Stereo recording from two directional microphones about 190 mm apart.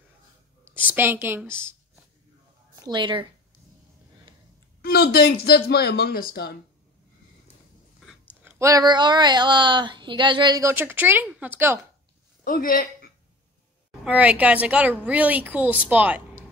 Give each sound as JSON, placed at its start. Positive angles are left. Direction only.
{"t": 0.7, "sound": "a woman's voice", "side_deg": -10}
{"t": 2.7, "sound": "a woman's voice", "side_deg": -20}
{"t": 4.8, "sound": "speech", "side_deg": 60}
{"t": 8.0, "sound": "speech", "side_deg": -5}
{"t": 12.4, "sound": "speech", "side_deg": 50}
{"t": 14.0, "sound": "speech", "side_deg": -5}